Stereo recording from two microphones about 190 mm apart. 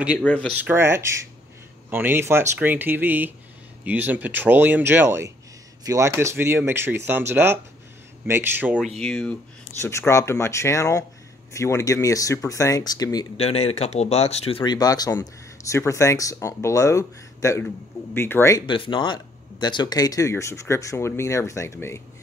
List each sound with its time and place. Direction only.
0.2 s speech: 10° left (ahead or behind)
0.5 s speech: 10° right (ahead or behind)
9.0 s speech: 5° left (ahead or behind); by 13.3 s 20° left (ahead or behind)
13.4 s speech: 30° left (ahead or behind); by 18.6 s 15° left (ahead or behind)
18.7 s speech: 25° left (ahead or behind)